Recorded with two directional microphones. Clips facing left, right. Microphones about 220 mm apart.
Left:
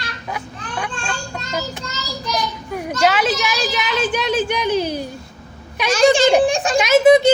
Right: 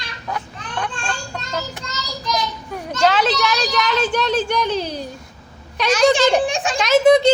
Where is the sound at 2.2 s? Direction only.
10° left (ahead or behind).